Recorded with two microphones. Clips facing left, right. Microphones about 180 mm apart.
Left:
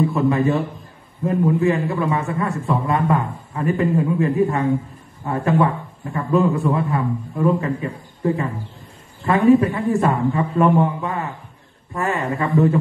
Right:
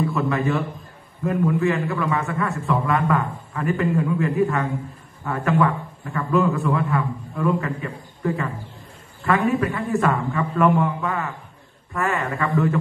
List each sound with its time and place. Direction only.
0.0 s a man's voice: 30° left (ahead or behind)
2.0 s a man's voice: 30° left (ahead or behind)
7.4 s a man's voice: 20° left (ahead or behind)
9.8 s a woman's voice: 35° left (ahead or behind)
10.5 s a man's voice: 20° left (ahead or behind)